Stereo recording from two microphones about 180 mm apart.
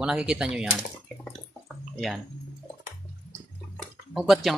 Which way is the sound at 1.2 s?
Centre (ahead or behind).